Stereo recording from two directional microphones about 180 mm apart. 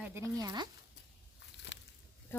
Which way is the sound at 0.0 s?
15° right (ahead or behind).